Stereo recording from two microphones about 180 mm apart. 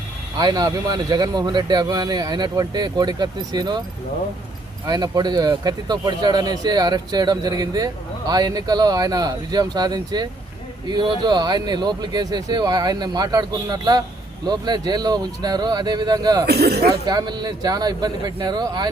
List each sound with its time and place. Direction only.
0.3 s speech: 20° right (ahead or behind)
4.9 s speech: 20° right (ahead or behind)
16.5 s speech: 65° right (ahead or behind)
16.9 s speech: 20° right (ahead or behind)